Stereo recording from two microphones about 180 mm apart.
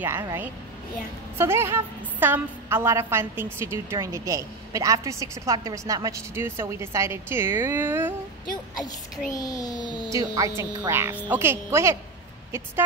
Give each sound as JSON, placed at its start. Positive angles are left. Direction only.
{"t": 0.0, "sound": "a woman's voice", "side_deg": -15}
{"t": 9.3, "sound": "a child's voice", "side_deg": 20}
{"t": 10.1, "sound": "a woman's voice", "side_deg": -20}